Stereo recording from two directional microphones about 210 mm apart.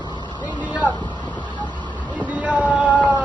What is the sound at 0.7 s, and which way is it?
Vehicle, 20° left (ahead or behind).